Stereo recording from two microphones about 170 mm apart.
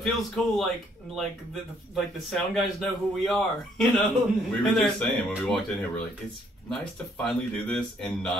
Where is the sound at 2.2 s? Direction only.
Centre (ahead or behind).